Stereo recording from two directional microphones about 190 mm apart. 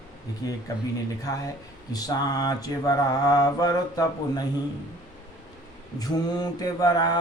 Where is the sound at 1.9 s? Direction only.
20° left (ahead or behind).